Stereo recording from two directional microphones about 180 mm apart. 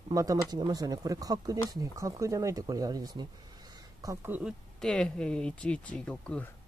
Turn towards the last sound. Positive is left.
turn(degrees=5)  # may be behind; listen again after turning